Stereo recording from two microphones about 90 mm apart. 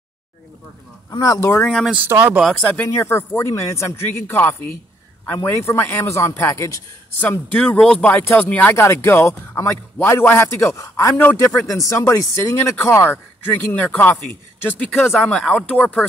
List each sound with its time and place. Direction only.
1.2 s a man's voice: 35° left (ahead or behind)
1.6 s speech: 10° left (ahead or behind)
2.0 s speech: 25° right (ahead or behind)
2.6 s speech: 20° left (ahead or behind)
2.9 s a man's voice: 30° left (ahead or behind)
7.2 s speech: 20° left (ahead or behind)
7.5 s speech: 10° left (ahead or behind)
8.1 s speech: 25° left (ahead or behind)
8.7 s a man's voice: 30° left (ahead or behind); by 16.1 s 10° left (ahead or behind)